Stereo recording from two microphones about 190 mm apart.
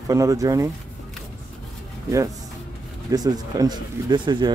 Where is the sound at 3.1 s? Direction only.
20° right (ahead or behind).